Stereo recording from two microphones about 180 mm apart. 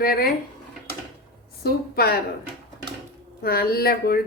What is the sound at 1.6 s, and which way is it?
Speech, 60° left (ahead or behind).